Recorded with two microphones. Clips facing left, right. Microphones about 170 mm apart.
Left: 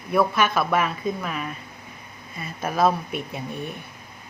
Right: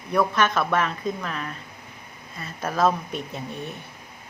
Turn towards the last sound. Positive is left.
turn(degrees=10)  # may be behind; listen again after turning